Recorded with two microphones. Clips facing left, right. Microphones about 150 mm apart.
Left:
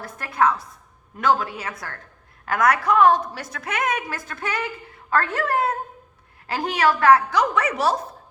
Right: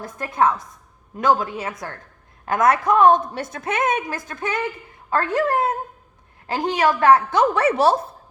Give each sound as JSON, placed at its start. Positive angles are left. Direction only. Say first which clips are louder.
{"t": 0.0, "sound": "a woman's voice", "louder": "right 1 dB", "side_deg": -20}